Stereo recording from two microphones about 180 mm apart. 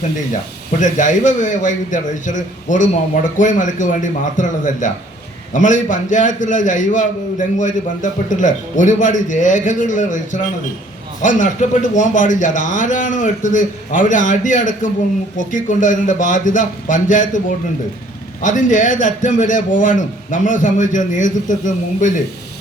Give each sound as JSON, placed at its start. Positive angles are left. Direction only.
{"t": 0.7, "sound": "a man's voice", "side_deg": 45}
{"t": 18.4, "sound": "a man's voice", "side_deg": 45}